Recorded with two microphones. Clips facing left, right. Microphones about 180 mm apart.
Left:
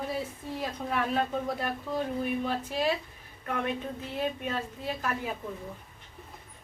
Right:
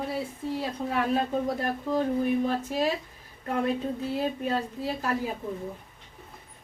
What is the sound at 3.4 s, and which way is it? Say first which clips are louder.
Speech: right 5 dB; 30° right (ahead or behind).